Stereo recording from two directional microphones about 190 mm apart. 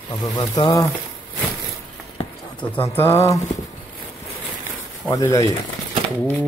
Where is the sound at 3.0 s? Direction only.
15° left (ahead or behind).